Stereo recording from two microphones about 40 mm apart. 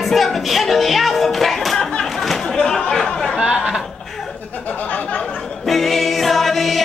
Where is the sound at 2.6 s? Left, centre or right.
Left.